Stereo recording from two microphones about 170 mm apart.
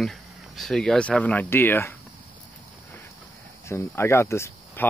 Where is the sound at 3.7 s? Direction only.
15° left (ahead or behind).